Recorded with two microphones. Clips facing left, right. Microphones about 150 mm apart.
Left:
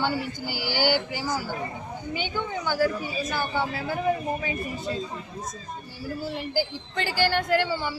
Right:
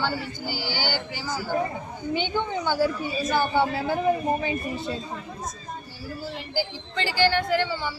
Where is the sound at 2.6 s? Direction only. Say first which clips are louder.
Left 2 dB; 20° right (ahead or behind).